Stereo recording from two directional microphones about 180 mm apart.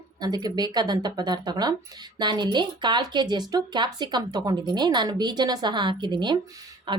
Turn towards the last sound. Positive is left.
turn(degrees=-25)  # may be behind; listen again after turning